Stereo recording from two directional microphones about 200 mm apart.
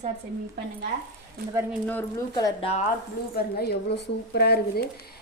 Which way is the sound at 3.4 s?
50° left (ahead or behind).